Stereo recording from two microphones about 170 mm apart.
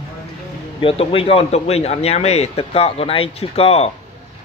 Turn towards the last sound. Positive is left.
turn(degrees=35)  # may be behind; listen again after turning